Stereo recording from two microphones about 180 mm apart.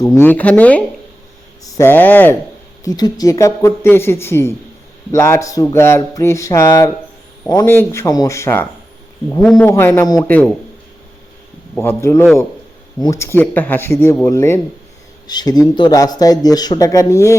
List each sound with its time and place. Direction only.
0.0 s speech: 15° left (ahead or behind)
2.8 s speech: 20° left (ahead or behind)
11.7 s speech: 15° left (ahead or behind)